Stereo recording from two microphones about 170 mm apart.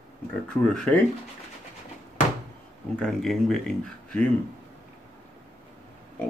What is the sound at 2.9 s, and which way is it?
Speech, 5° left (ahead or behind).